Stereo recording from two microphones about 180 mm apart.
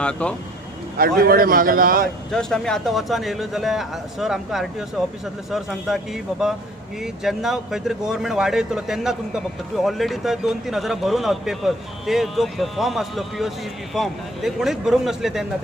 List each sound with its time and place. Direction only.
0.0 s speech: 5° left (ahead or behind)
0.9 s a man's voice: 55° right (ahead or behind)
2.3 s speech: 5° left (ahead or behind)